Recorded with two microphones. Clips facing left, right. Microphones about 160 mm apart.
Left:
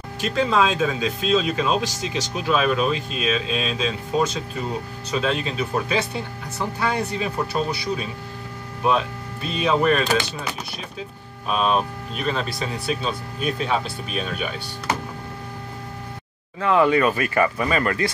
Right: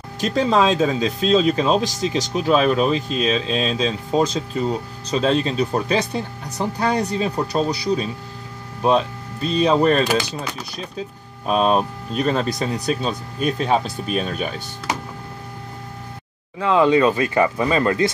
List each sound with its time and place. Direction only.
0.2 s speech: 35° right (ahead or behind)
9.5 s speech: 40° right (ahead or behind)
11.4 s speech: 40° right (ahead or behind)
14.9 s power windows: 15° right (ahead or behind)
16.5 s speech: 20° right (ahead or behind)